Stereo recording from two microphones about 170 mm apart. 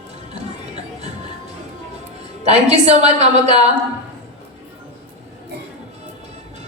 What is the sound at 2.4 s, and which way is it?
A woman's voice, 40° right (ahead or behind).